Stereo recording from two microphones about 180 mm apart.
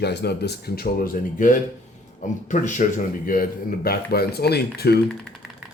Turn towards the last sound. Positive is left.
turn(degrees=60)  # may be behind; listen again after turning